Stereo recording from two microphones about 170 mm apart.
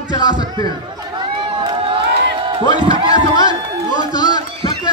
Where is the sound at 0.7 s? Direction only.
25° right (ahead or behind).